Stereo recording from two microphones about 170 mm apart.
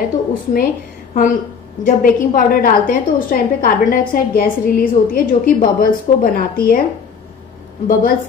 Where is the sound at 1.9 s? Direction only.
55° left (ahead or behind).